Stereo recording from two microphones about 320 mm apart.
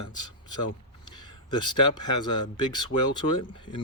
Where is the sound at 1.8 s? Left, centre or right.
Left.